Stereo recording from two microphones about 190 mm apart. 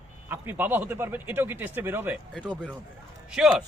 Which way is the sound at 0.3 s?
10° right (ahead or behind).